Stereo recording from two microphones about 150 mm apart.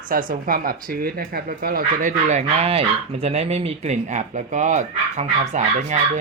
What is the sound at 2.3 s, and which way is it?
Speech, 45° right (ahead or behind).